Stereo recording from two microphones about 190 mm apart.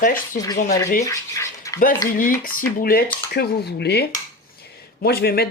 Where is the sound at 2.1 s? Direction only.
45° left (ahead or behind).